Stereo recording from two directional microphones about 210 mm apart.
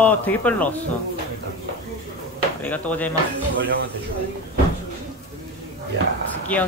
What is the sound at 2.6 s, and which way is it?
Speech, 5° left (ahead or behind).